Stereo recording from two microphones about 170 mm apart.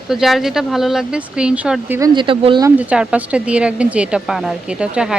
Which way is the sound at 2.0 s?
25° right (ahead or behind).